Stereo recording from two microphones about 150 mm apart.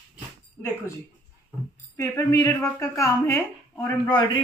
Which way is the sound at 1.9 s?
20° left (ahead or behind).